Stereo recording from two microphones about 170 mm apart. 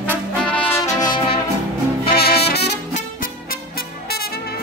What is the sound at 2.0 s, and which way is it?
Brass instrument, 65° left (ahead or behind).